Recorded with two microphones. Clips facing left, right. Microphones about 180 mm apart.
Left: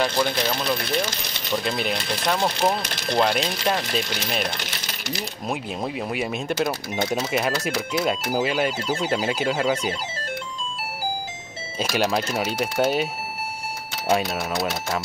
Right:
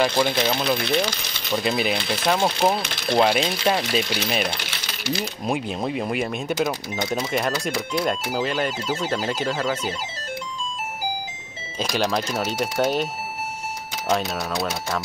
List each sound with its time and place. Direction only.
0.1 s speech: 10° right (ahead or behind)
4.8 s sewing machine: 40° left (ahead or behind)
5.5 s speech: centre (ahead or behind)
11.8 s speech: 5° left (ahead or behind)